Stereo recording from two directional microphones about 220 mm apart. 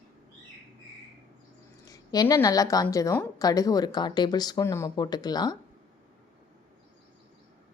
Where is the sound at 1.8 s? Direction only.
15° left (ahead or behind).